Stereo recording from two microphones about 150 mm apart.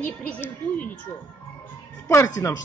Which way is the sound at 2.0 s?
20° left (ahead or behind).